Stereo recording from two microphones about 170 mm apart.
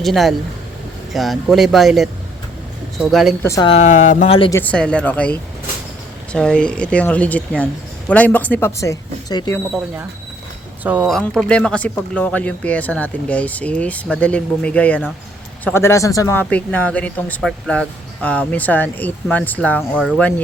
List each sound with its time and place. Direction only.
0.0 s speech: centre (ahead or behind)
3.4 s speech: 20° left (ahead or behind)
3.7 s speech: 45° left (ahead or behind)
4.5 s speech: 10° left (ahead or behind)
10.8 s speech: 10° right (ahead or behind)
11.1 s speech: 5° left (ahead or behind)